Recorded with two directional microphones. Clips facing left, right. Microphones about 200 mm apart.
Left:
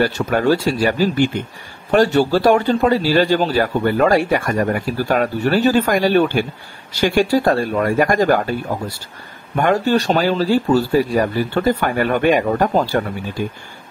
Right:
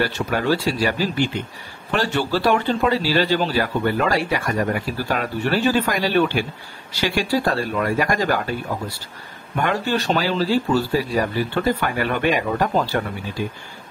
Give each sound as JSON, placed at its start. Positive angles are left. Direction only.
{"t": 0.0, "sound": "a man's voice", "side_deg": 45}
{"t": 9.6, "sound": "a man's voice", "side_deg": 45}